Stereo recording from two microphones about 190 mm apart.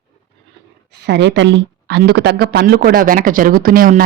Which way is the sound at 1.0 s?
65° right (ahead or behind).